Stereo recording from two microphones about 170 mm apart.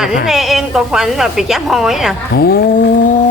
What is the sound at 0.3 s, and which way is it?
Speech, centre (ahead or behind).